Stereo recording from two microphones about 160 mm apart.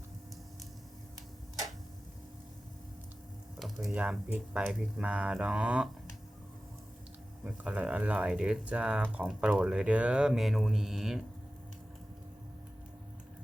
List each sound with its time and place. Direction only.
3.6 s speech: centre (ahead or behind)
7.4 s speech: 10° right (ahead or behind)